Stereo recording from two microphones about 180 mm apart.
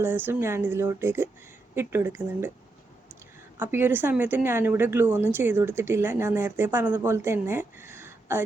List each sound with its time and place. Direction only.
0.0 s a woman's voice: 10° right (ahead or behind)
3.6 s a woman's voice: 10° right (ahead or behind)